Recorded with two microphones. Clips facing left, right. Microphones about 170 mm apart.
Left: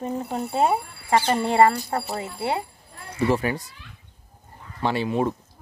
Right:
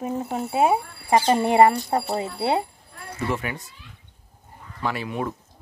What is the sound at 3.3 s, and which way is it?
Speech, 35° left (ahead or behind).